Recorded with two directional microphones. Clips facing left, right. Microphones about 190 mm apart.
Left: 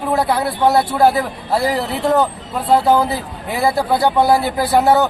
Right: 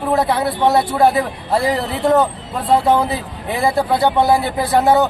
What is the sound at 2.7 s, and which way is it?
Speech, 5° left (ahead or behind).